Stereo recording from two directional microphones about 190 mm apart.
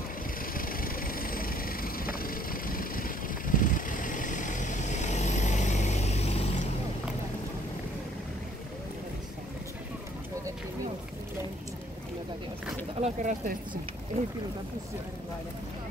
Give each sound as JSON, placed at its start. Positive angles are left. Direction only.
{"t": 0.6, "sound": "vehicle", "side_deg": 50}
{"t": 13.0, "sound": "speech", "side_deg": -45}